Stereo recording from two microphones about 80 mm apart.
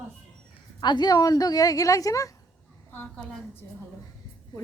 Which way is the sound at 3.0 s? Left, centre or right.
Centre.